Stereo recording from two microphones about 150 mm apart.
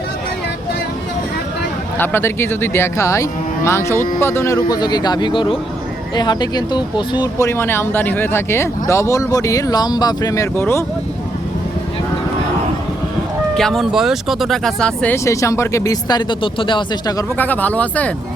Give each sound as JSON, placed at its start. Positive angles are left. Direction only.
{"t": 2.0, "sound": "speech", "side_deg": 15}
{"t": 13.6, "sound": "speech", "side_deg": 0}
{"t": 15.1, "sound": "speech", "side_deg": 20}
{"t": 17.3, "sound": "speech", "side_deg": 10}